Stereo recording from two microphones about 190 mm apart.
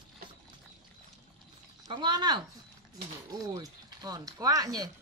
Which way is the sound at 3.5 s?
20° right (ahead or behind).